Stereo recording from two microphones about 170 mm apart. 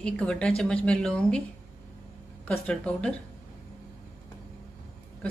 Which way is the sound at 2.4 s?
5° left (ahead or behind).